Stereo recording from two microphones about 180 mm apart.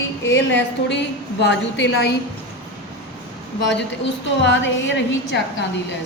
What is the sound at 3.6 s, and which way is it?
Speech, 75° left (ahead or behind).